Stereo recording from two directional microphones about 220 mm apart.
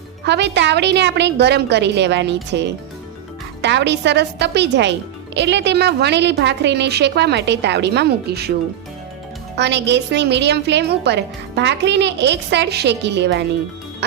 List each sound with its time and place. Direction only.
0.3 s speech: 50° right (ahead or behind)
9.6 s speech: 50° right (ahead or behind)